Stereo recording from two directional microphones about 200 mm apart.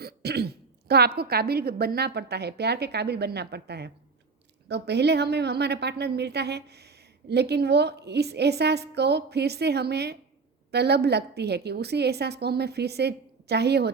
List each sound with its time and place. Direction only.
0.0 s a woman's voice: 55° right (ahead or behind)